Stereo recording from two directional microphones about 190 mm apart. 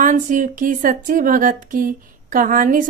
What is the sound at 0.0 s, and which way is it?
Speech, 40° right (ahead or behind).